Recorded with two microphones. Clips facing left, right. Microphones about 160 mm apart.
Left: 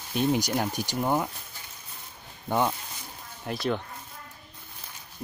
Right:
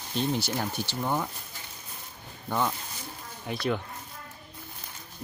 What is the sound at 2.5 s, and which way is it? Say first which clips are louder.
Speech: left 3 dB; 20° left (ahead or behind).